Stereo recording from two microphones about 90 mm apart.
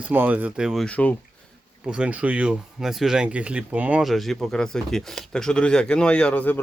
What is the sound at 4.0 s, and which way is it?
Speech, centre (ahead or behind).